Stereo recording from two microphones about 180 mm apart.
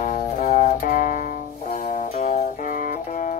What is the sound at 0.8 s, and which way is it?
Music, 50° left (ahead or behind).